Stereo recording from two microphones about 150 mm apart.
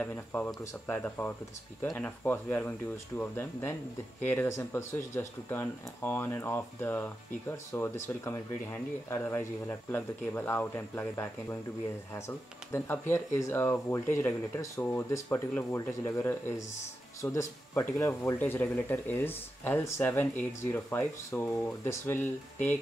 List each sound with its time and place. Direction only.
0.0 s speech: 10° left (ahead or behind)